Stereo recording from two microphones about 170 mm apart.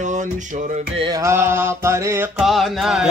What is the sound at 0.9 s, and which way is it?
Mantra, 25° right (ahead or behind).